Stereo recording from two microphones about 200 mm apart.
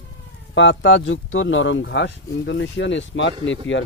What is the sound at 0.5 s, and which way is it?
Speech, 65° left (ahead or behind).